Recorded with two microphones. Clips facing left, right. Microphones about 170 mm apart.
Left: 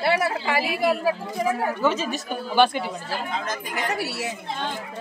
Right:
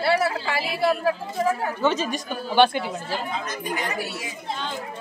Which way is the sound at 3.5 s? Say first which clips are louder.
Left 1 dB; 75° left (ahead or behind).